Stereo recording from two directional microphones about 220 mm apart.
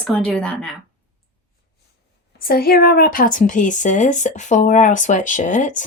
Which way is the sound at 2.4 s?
45° left (ahead or behind).